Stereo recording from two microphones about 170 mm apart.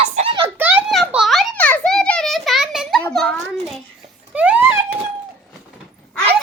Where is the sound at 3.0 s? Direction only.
5° left (ahead or behind).